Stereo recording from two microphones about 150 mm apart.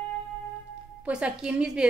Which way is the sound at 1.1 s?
5° right (ahead or behind).